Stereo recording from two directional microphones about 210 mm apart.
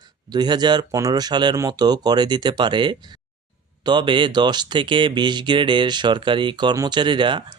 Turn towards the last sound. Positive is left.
turn(degrees=-20)  # may be behind; listen again after turning